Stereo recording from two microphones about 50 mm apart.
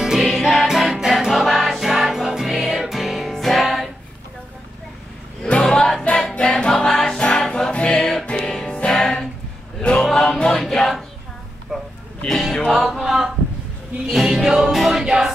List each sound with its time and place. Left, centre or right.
0.0 s music: centre
5.6 s music: centre
10.4 s choir: centre
11.7 s a sound: centre
12.3 s music: centre